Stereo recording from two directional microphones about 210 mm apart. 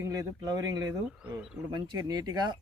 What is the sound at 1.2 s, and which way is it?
Speech, 5° right (ahead or behind).